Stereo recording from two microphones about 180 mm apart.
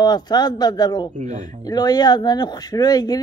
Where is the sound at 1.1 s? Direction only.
45° right (ahead or behind).